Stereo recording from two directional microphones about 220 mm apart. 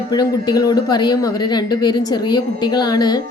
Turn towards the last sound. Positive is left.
turn(degrees=20)  # may be behind; listen again after turning